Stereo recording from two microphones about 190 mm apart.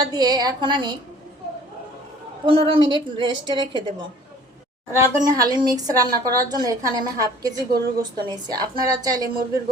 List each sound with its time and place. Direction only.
0.0 s a woman's voice: 20° right (ahead or behind)
2.5 s a woman's voice: 30° right (ahead or behind)
4.9 s a woman's voice: 15° right (ahead or behind)